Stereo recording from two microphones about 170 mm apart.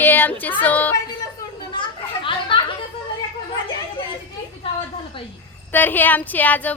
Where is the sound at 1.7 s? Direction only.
30° left (ahead or behind).